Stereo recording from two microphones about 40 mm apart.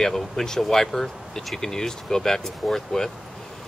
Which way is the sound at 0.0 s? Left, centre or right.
Centre.